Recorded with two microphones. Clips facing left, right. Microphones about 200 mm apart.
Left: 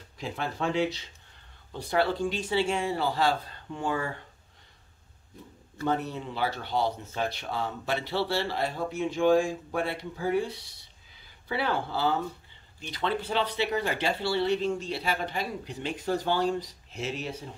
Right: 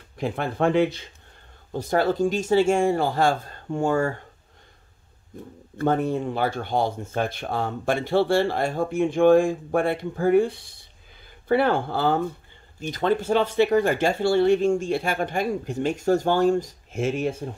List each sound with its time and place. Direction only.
0.2 s speech: 55° right (ahead or behind)
5.3 s speech: 50° right (ahead or behind)